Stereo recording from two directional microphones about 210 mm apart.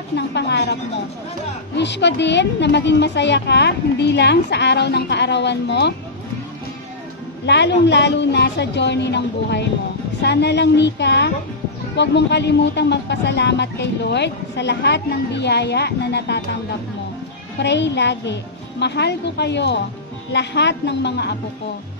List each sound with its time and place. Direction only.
0.1 s a woman's voice: 55° left (ahead or behind)
1.8 s speech: 55° left (ahead or behind)
7.4 s speech: 55° left (ahead or behind)